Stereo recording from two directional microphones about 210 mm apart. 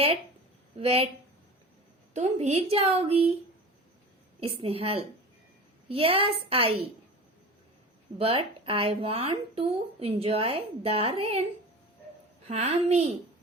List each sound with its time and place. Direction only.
0.8 s speech: 30° right (ahead or behind)
2.1 s speech: 30° right (ahead or behind)
4.4 s speech: 25° right (ahead or behind)
8.2 s speech: 25° right (ahead or behind)
12.5 s a woman's voice: 30° right (ahead or behind)